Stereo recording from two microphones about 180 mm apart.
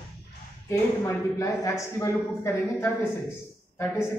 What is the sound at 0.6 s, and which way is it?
Speech, 15° left (ahead or behind).